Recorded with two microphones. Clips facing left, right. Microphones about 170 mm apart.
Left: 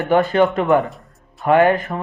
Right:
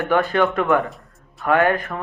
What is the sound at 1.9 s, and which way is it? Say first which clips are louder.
Speech: left 3 dB; 15° left (ahead or behind).